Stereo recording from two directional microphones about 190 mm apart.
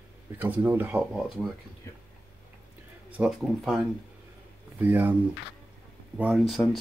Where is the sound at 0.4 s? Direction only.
10° right (ahead or behind).